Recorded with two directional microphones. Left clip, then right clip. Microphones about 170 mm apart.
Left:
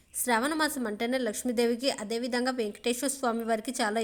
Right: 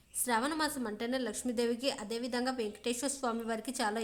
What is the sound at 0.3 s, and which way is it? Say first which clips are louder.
A woman's voice: left 5 dB; 25° left (ahead or behind).